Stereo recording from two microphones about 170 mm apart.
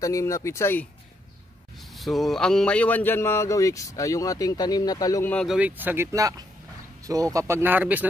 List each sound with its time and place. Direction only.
0.0 s a man's voice: 20° left (ahead or behind)
1.8 s a man's voice: centre (ahead or behind); by 5.3 s 20° left (ahead or behind)
5.3 s speech: 5° left (ahead or behind)
5.6 s speech: 10° right (ahead or behind)